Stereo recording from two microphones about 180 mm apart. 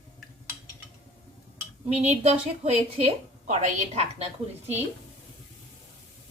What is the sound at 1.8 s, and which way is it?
A woman's voice, 40° right (ahead or behind).